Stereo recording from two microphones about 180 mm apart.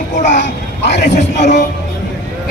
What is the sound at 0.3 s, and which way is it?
A man's voice, 75° left (ahead or behind).